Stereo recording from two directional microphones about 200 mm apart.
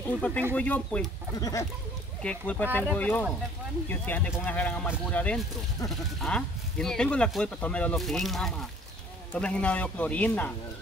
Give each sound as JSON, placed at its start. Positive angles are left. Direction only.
{"t": 0.2, "sound": "speech", "side_deg": 5}
{"t": 1.3, "sound": "speech", "side_deg": 20}
{"t": 2.2, "sound": "speech", "side_deg": 5}